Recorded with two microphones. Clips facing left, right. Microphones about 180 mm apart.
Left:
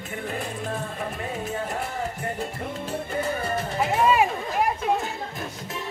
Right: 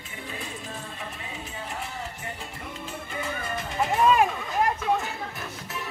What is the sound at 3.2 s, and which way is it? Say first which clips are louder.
Music: left 5 dB; 40° left (ahead or behind).